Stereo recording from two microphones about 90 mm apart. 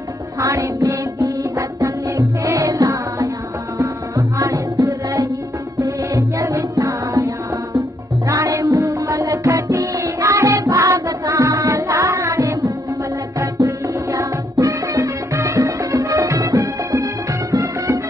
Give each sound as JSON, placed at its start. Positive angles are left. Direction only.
{"t": 0.4, "sound": "music", "side_deg": -40}
{"t": 2.5, "sound": "music", "side_deg": -45}
{"t": 4.4, "sound": "music", "side_deg": -35}
{"t": 8.5, "sound": "music", "side_deg": -35}
{"t": 9.2, "sound": "music", "side_deg": -50}